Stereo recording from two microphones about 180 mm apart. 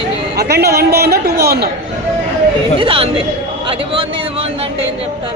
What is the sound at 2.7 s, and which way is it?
Speech, 30° right (ahead or behind).